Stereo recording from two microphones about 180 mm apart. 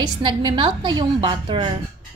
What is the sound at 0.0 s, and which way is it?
A woman's voice, 25° right (ahead or behind).